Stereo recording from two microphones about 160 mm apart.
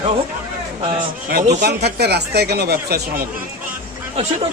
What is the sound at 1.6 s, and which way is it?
Speech, 90° right.